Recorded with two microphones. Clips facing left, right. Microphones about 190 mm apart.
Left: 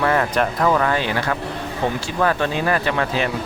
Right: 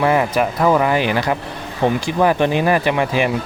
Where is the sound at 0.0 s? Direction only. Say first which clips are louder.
Right 3 dB; 10° right (ahead or behind).